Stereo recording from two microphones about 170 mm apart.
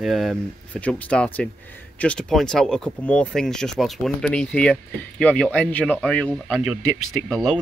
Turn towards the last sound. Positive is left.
turn(degrees=0)  # may be behind; listen again after turning